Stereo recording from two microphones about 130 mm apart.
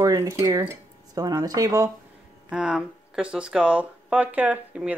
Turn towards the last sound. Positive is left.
turn(degrees=-10)  # may be behind; listen again after turning